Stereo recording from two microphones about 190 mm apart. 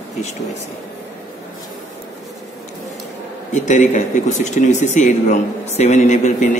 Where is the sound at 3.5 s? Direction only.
40° left (ahead or behind).